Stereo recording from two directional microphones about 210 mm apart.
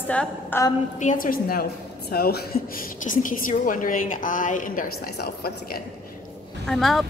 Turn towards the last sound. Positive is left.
turn(degrees=0)  # may be behind; listen again after turning